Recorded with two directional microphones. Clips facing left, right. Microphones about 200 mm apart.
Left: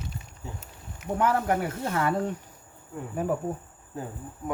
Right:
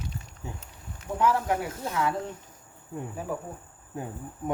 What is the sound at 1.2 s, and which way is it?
Speech, 55° left (ahead or behind).